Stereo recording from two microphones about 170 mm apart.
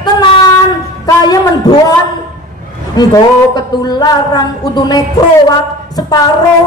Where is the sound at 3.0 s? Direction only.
25° left (ahead or behind).